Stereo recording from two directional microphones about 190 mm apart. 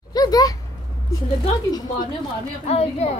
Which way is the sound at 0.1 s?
20° left (ahead or behind).